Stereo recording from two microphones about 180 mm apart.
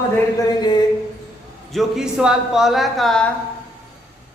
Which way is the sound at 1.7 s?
Centre (ahead or behind).